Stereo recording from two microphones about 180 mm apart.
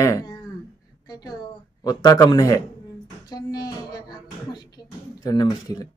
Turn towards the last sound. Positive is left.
turn(degrees=20)  # may be behind; listen again after turning